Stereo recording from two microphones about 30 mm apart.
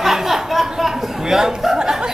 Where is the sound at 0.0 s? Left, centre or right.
Centre.